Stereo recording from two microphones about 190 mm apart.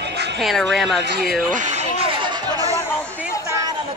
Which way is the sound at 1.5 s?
40° right (ahead or behind).